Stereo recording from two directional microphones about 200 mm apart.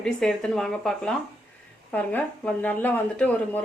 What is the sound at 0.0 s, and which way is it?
Speech, 5° left (ahead or behind).